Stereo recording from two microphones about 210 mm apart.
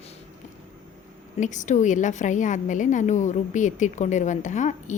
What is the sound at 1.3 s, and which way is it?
A woman's voice, 35° left (ahead or behind).